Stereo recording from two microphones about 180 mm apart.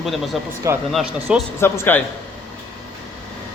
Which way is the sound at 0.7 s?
15° right (ahead or behind).